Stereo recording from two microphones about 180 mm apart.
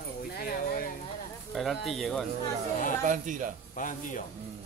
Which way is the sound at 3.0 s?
45° right (ahead or behind).